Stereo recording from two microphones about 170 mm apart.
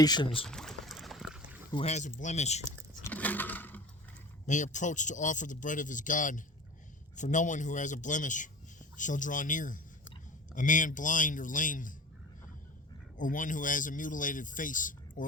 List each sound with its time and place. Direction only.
0.0 s speech: 25° left (ahead or behind)
0.4 s a sound: 5° left (ahead or behind)
1.7 s speech: 40° left (ahead or behind)
3.0 s a sound: 10° left (ahead or behind)
4.4 s speech: 45° left (ahead or behind)
13.1 s speech: 50° left (ahead or behind)